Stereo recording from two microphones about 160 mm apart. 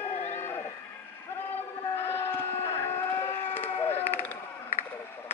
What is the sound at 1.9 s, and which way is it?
Sheep, 15° left (ahead or behind).